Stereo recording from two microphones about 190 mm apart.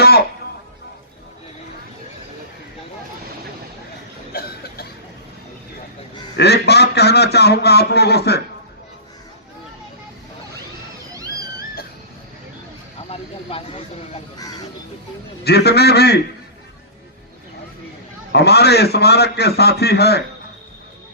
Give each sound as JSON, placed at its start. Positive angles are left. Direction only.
{"t": 4.3, "sound": "a sound", "side_deg": 55}
{"t": 6.3, "sound": "a man's voice", "side_deg": 60}
{"t": 13.1, "sound": "vehicle", "side_deg": 30}
{"t": 15.4, "sound": "a man's voice", "side_deg": 60}
{"t": 18.3, "sound": "a man's voice", "side_deg": 60}